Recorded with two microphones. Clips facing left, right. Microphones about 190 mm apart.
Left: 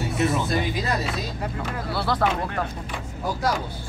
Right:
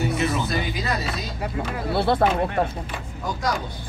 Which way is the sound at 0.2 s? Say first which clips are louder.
Left 1 dB; centre (ahead or behind).